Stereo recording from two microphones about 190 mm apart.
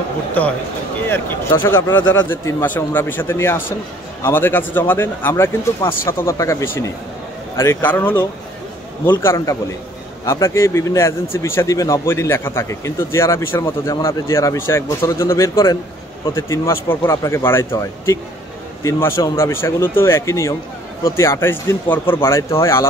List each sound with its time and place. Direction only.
0.4 s speech: 10° left (ahead or behind)